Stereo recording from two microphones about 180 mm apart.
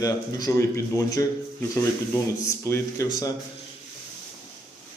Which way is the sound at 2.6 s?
15° left (ahead or behind).